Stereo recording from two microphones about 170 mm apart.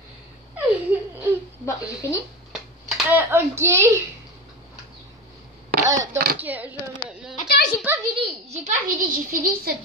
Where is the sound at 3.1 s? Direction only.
10° right (ahead or behind).